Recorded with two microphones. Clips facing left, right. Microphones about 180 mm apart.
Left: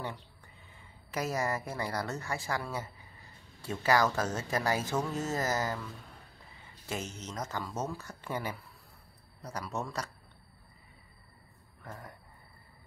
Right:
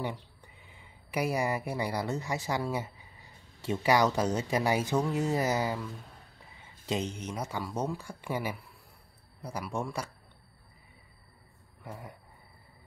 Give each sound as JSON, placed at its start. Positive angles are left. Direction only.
{"t": 0.7, "sound": "speech", "side_deg": -15}
{"t": 6.9, "sound": "speech", "side_deg": -15}
{"t": 11.8, "sound": "speech", "side_deg": -10}